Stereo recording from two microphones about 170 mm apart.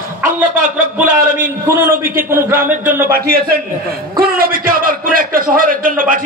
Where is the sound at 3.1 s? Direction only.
60° right (ahead or behind).